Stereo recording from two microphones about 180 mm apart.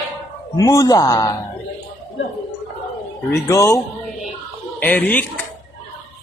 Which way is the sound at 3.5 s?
15° left (ahead or behind).